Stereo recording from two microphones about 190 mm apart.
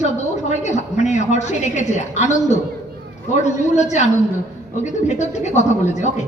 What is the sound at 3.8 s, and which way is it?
A woman's voice, 40° left (ahead or behind).